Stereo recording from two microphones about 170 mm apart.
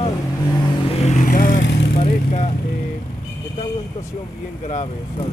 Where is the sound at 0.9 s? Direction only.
40° left (ahead or behind).